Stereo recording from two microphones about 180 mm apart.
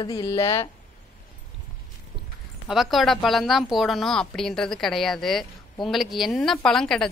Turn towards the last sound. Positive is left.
turn(degrees=5)  # may be behind; listen again after turning